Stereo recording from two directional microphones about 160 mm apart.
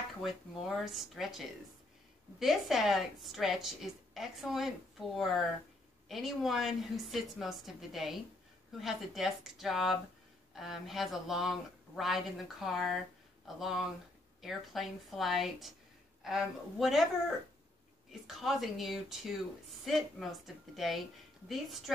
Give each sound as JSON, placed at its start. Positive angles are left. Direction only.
{"t": 0.2, "sound": "speech", "side_deg": 0}
{"t": 18.2, "sound": "speech", "side_deg": 0}